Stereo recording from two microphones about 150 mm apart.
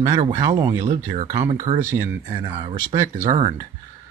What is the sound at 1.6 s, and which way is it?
Speech, 60° right (ahead or behind).